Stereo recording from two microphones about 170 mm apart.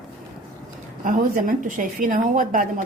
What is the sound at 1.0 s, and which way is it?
A woman's voice, 50° right (ahead or behind).